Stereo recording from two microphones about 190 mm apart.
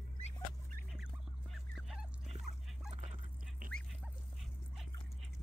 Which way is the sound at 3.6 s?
45° right (ahead or behind).